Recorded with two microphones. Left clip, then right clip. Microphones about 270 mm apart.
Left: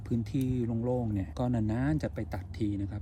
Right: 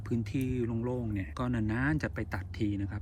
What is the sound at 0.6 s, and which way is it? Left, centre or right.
Speech, centre.